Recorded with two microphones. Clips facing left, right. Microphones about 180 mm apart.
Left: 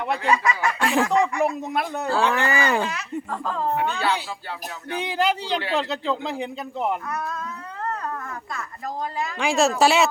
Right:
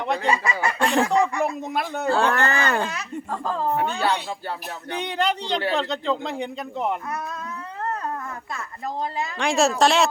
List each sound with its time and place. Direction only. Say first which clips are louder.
0.3 s speech: left 3 dB; 30° right (ahead or behind)
0.8 s speech: right 1 dB; 5° left (ahead or behind)
2.9 s speech: left 1 dB; 35° right (ahead or behind)
4.9 s speech: left 1 dB; 5° left (ahead or behind)
9.4 s speech: even; centre (ahead or behind)